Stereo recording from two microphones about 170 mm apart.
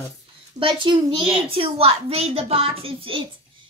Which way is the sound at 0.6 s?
30° right (ahead or behind).